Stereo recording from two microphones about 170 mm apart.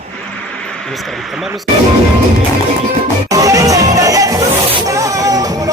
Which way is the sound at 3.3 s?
20° right (ahead or behind).